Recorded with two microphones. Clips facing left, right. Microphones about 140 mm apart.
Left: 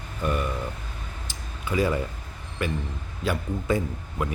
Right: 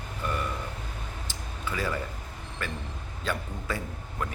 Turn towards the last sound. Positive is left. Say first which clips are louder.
# left 5 dB
turn(degrees=15)  # may be behind; listen again after turning